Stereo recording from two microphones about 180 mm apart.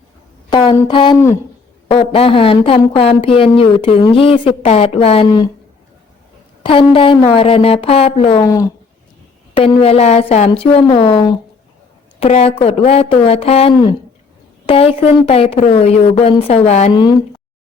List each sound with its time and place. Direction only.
0.5 s a woman's voice: 25° left (ahead or behind)
6.6 s a woman's voice: 30° left (ahead or behind)
8.4 s a woman's voice: 20° left (ahead or behind)
9.6 s a woman's voice: 35° left (ahead or behind)
16.9 s speech: 25° left (ahead or behind)